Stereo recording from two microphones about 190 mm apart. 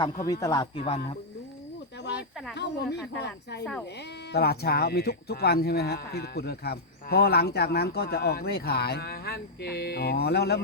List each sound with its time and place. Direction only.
0.3 s speech: 20° left (ahead or behind)
0.8 s speech: 30° left (ahead or behind)
2.6 s speech: 65° left (ahead or behind)